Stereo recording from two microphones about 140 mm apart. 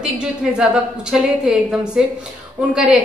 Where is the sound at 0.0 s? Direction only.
5° right (ahead or behind).